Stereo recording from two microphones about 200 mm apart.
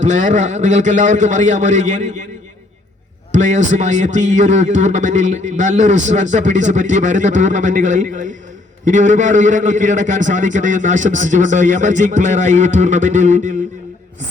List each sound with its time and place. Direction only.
0.0 s a man's voice: 35° right (ahead or behind)
3.3 s a man's voice: 35° right (ahead or behind)